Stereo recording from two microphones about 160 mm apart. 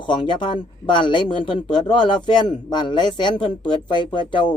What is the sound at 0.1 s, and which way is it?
Speech, 30° left (ahead or behind).